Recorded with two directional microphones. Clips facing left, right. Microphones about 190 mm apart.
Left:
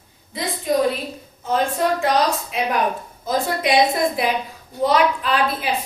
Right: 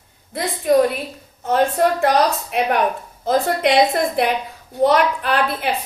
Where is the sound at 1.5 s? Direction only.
60° right (ahead or behind).